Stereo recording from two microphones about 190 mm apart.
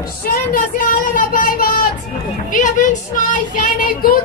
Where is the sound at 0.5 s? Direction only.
45° left (ahead or behind).